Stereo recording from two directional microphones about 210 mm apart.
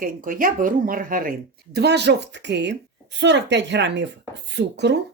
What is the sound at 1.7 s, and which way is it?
Speech, 55° right (ahead or behind).